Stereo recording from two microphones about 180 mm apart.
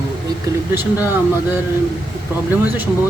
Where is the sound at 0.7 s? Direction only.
10° right (ahead or behind).